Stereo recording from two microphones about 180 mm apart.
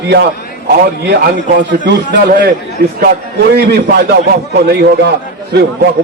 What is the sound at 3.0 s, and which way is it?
A man's voice, 60° right (ahead or behind).